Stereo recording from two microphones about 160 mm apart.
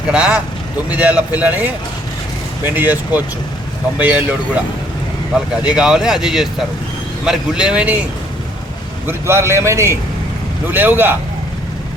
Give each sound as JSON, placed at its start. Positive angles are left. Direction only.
{"t": 0.1, "sound": "a man's voice", "side_deg": -5}
{"t": 9.0, "sound": "a man's voice", "side_deg": -15}